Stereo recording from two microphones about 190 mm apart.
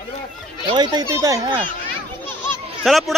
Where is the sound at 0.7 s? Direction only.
20° right (ahead or behind).